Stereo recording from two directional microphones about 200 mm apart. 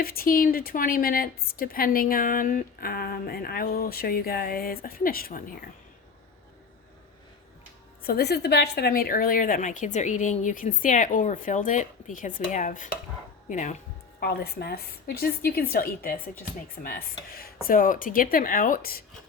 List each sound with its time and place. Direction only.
0.0 s a woman's voice: 50° left (ahead or behind)
8.0 s a woman's voice: 50° left (ahead or behind)
14.2 s a woman's voice: 50° left (ahead or behind)